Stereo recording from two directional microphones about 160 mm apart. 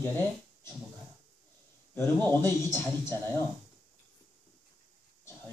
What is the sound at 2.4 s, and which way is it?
Speech, 15° left (ahead or behind).